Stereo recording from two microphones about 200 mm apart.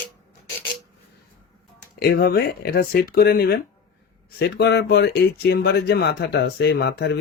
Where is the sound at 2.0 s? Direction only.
50° left (ahead or behind).